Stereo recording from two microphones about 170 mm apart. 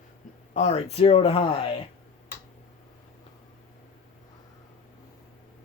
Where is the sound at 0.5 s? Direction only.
40° left (ahead or behind).